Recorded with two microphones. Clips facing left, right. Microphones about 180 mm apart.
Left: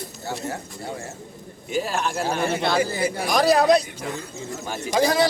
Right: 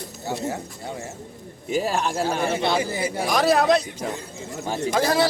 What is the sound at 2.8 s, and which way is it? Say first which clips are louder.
Speech: left 2 dB; 25° right (ahead or behind).